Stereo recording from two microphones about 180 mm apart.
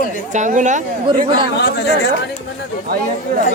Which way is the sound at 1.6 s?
75° left (ahead or behind).